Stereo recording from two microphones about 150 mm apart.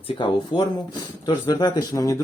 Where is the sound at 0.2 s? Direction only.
35° left (ahead or behind).